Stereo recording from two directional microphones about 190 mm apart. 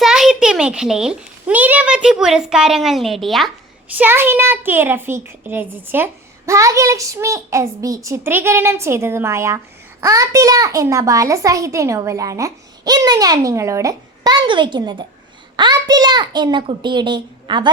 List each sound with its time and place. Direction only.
0.0 s a child's voice: 5° right (ahead or behind)
3.9 s a child's voice: 10° right (ahead or behind)